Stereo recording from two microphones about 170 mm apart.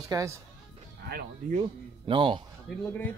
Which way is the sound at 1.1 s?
65° right (ahead or behind).